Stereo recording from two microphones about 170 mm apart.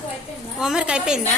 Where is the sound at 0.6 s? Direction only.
5° right (ahead or behind).